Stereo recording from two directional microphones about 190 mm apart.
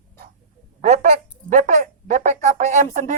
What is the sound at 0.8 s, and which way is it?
Speech, 40° right (ahead or behind).